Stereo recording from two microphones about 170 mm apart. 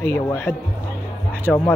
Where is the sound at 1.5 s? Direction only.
Centre (ahead or behind).